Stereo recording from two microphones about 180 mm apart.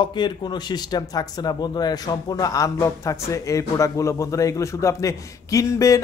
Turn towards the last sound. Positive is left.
turn(degrees=20)  # may be behind; listen again after turning